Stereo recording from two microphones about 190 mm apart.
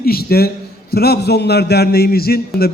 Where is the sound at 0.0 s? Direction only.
55° left (ahead or behind).